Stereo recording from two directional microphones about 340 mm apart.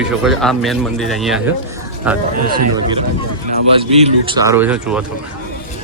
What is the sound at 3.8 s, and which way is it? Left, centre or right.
A man's voice, centre.